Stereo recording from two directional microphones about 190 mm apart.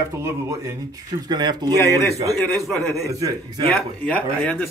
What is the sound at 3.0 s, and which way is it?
Speech, 15° right (ahead or behind).